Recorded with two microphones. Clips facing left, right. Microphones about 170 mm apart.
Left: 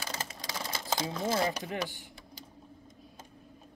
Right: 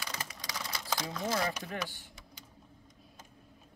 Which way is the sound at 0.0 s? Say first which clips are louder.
Left 3 dB; 25° left (ahead or behind).